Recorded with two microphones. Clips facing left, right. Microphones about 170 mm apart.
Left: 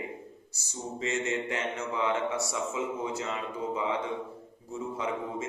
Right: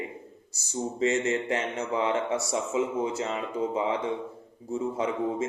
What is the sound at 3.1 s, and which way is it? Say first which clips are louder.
Speech: right 4 dB; 30° right (ahead or behind).